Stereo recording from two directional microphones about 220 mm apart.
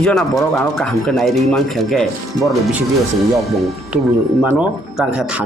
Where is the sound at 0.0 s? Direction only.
Centre (ahead or behind).